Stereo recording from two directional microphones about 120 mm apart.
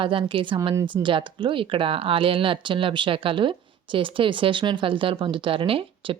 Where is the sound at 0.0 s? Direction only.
45° right (ahead or behind).